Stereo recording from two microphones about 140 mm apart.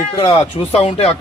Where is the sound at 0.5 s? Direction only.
50° left (ahead or behind).